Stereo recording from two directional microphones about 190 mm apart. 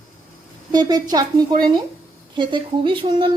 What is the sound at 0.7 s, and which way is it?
Speech, 20° right (ahead or behind).